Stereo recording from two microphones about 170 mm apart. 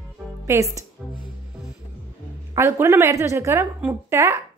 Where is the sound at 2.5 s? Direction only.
15° right (ahead or behind).